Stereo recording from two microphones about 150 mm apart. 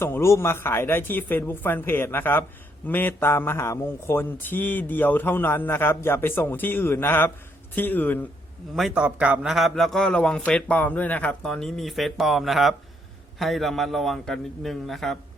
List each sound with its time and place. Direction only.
0.0 s speech: 15° left (ahead or behind)
8.7 s a man's voice: 5° right (ahead or behind)